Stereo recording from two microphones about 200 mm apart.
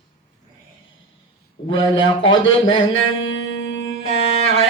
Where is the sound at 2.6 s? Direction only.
75° left (ahead or behind).